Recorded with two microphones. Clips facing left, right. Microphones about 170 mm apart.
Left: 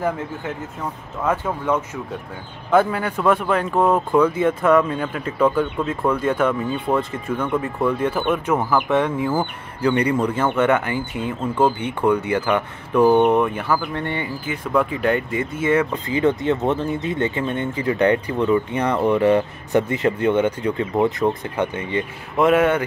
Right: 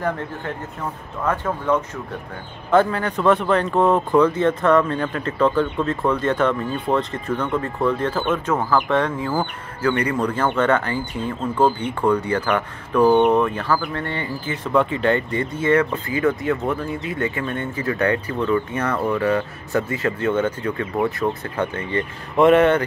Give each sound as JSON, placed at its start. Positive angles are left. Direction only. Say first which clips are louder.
{"t": 1.2, "sound": "speech", "louder": "left 1 dB", "side_deg": 10}
{"t": 14.7, "sound": "speech", "louder": "right 1 dB", "side_deg": 5}
{"t": 16.1, "sound": "speech", "louder": "left 2 dB", "side_deg": 20}
{"t": 22.4, "sound": "speech", "louder": "right 2 dB", "side_deg": 5}